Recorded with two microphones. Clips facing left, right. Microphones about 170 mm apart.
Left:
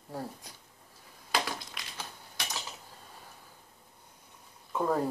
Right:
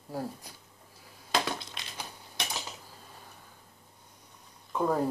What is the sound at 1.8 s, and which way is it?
Crushing, 25° right (ahead or behind).